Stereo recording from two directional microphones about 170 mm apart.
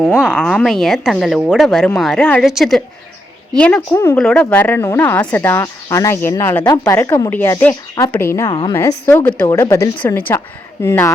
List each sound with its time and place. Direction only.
0.2 s a woman's voice: 5° left (ahead or behind)